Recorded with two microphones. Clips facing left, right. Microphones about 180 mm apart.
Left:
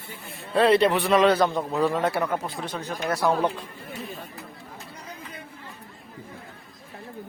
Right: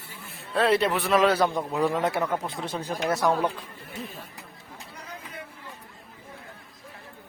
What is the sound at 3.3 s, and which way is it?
Speech, 10° left (ahead or behind).